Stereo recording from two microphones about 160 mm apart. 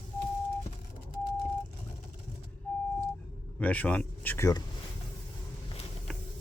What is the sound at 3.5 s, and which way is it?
Speech, 10° left (ahead or behind).